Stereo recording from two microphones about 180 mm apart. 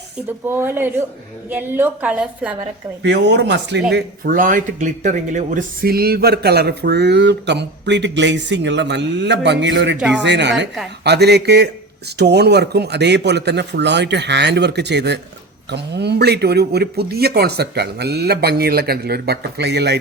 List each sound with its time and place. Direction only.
0.3 s a woman's voice: 10° right (ahead or behind)
3.0 s speech: 70° right (ahead or behind)
3.9 s speech: 50° right (ahead or behind); by 10.0 s 80° right
10.0 s a woman's voice: 5° right (ahead or behind)
10.2 s speech: 75° right (ahead or behind)